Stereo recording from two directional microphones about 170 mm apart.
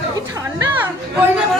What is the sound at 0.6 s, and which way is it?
Chatter, 10° right (ahead or behind).